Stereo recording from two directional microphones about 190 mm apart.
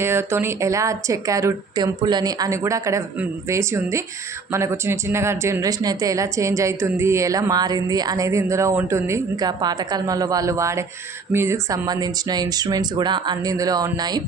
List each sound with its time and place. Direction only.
0.0 s speech: 15° right (ahead or behind)